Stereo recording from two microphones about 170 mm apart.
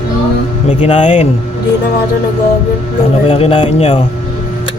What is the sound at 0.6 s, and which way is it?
Speech, 35° left (ahead or behind).